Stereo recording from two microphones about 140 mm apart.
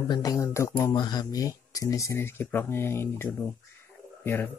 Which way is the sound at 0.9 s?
30° left (ahead or behind).